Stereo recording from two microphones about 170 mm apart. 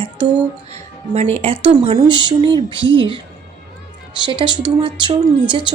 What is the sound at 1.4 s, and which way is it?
A woman's voice, 35° right (ahead or behind).